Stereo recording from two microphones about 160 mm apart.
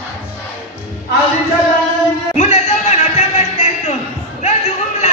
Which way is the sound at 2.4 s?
40° left (ahead or behind).